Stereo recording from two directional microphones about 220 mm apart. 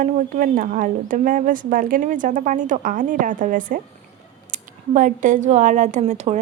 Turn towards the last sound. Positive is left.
turn(degrees=-30)  # may be behind; listen again after turning